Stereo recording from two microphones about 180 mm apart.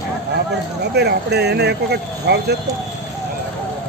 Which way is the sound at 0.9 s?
65° right (ahead or behind).